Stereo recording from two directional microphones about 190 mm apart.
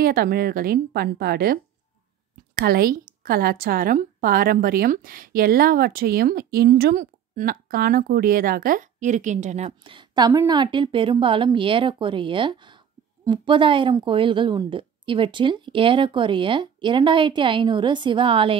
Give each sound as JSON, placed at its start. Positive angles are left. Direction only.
{"t": 0.0, "sound": "a woman's voice", "side_deg": -50}